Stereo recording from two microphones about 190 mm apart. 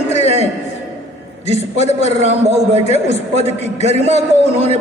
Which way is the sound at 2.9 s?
35° left (ahead or behind).